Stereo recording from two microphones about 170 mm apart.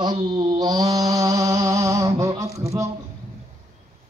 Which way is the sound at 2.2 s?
20° right (ahead or behind).